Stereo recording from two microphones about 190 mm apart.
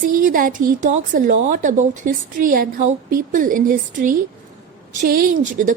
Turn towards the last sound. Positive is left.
turn(degrees=-45)  # may be behind; listen again after turning